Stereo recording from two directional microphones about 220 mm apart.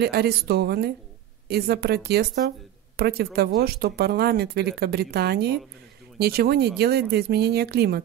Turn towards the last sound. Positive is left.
turn(degrees=-45)  # may be behind; listen again after turning